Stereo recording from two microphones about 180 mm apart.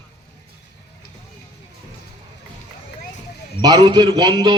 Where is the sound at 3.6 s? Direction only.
20° right (ahead or behind).